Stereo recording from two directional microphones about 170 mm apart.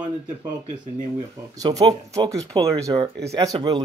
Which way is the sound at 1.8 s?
20° right (ahead or behind).